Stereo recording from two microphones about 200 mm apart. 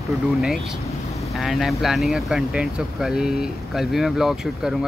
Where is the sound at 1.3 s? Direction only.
Centre (ahead or behind).